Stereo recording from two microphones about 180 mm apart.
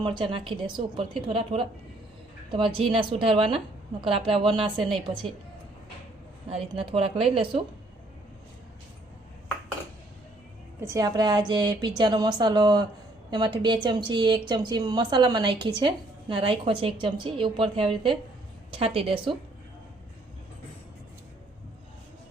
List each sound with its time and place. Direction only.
0.0 s a woman's voice: 30° right (ahead or behind)
4.8 s a woman's voice: centre (ahead or behind)
6.5 s a woman's voice: 30° right (ahead or behind)
10.8 s a woman's voice: 15° right (ahead or behind)